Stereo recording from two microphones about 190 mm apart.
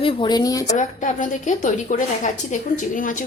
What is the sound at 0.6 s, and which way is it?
A woman's voice, 40° left (ahead or behind).